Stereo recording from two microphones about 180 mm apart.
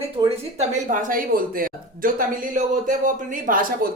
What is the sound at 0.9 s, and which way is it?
Speech, 45° right (ahead or behind).